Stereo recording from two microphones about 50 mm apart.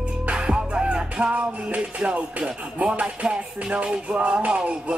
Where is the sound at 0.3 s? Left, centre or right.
Right.